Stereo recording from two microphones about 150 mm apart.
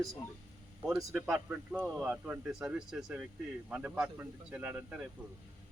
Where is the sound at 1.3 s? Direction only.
10° right (ahead or behind).